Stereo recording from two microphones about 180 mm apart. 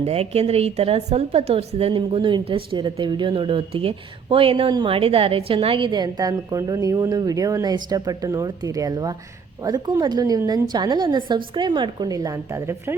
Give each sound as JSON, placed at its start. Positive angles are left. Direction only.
{"t": 0.0, "sound": "a woman's voice", "side_deg": -35}